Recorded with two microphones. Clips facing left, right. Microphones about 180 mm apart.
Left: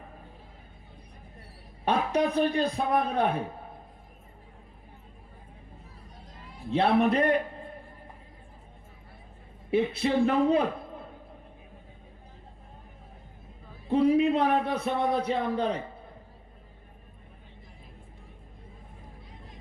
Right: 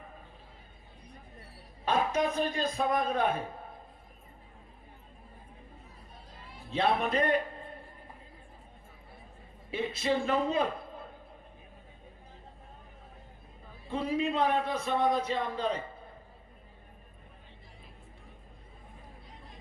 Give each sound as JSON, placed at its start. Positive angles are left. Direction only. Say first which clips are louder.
{"t": 1.8, "sound": "a man's voice", "louder": "left 3 dB", "side_deg": 65}
{"t": 6.7, "sound": "a man's voice", "louder": "left 6 dB", "side_deg": 60}
{"t": 9.7, "sound": "a man's voice", "louder": "left 6 dB", "side_deg": 60}
{"t": 13.9, "sound": "a man's voice", "louder": "left 8 dB", "side_deg": 65}